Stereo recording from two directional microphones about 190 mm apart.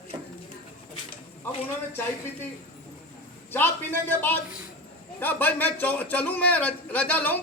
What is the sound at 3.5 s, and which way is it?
A man's voice, 10° left (ahead or behind).